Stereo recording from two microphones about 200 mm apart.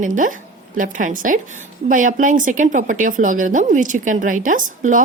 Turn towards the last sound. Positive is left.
turn(degrees=-40)  # may be behind; listen again after turning